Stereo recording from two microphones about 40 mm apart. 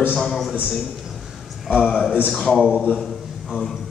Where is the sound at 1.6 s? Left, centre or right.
Centre.